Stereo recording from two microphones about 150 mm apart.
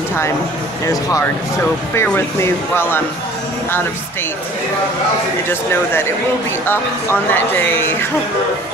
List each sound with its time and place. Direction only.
0.8 s speech: 20° left (ahead or behind)
5.5 s speech: 15° left (ahead or behind)